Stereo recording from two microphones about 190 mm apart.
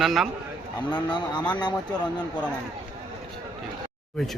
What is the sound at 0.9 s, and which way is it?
Speech, 25° left (ahead or behind).